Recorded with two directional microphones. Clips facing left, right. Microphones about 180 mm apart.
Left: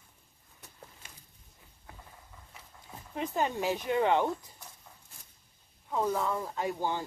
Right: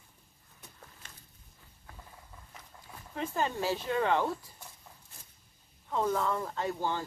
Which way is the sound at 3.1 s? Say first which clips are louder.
Left 1 dB; 20° left (ahead or behind).